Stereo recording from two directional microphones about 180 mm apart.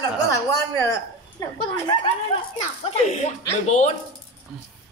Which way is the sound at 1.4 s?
25° left (ahead or behind).